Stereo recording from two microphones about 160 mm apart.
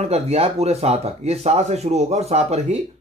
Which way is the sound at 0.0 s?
40° right (ahead or behind).